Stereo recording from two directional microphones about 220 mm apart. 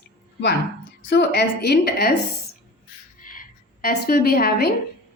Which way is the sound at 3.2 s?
40° left (ahead or behind).